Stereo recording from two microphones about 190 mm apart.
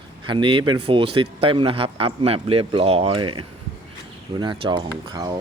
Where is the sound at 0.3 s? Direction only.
25° right (ahead or behind).